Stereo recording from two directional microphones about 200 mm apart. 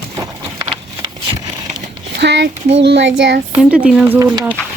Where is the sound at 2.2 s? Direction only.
60° right (ahead or behind).